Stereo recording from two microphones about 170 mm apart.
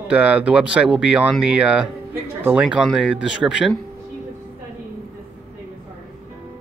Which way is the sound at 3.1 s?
90° left.